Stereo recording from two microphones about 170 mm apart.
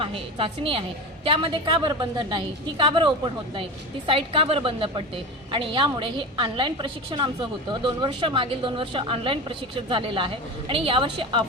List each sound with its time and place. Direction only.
0.0 s a woman's voice: 35° right (ahead or behind)